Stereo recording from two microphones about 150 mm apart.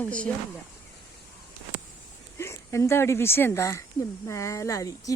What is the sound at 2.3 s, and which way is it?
Speech, 20° left (ahead or behind).